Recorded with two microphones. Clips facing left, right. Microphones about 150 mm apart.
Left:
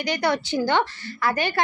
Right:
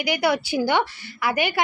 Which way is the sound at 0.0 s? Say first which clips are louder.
Right 1 dB; 10° right (ahead or behind).